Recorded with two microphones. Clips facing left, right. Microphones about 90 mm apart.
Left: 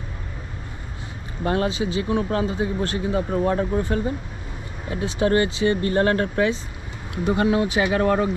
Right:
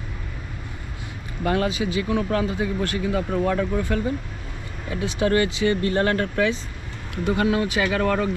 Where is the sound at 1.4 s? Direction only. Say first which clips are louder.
Even; 30° left (ahead or behind).